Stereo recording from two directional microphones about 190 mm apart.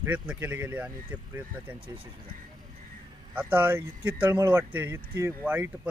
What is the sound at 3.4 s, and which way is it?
Speech, 10° right (ahead or behind).